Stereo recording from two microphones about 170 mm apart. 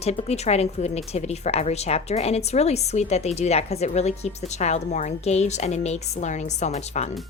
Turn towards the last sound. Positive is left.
turn(degrees=40)  # may be behind; listen again after turning